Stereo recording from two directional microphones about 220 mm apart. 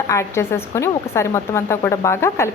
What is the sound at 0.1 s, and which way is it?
A woman's voice, 10° left (ahead or behind).